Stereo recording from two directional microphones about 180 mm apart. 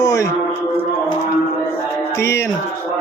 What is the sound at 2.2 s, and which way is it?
Speech, 15° left (ahead or behind).